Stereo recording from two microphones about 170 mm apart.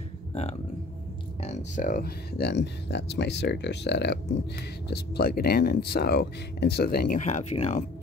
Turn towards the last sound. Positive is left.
turn(degrees=40)  # may be behind; listen again after turning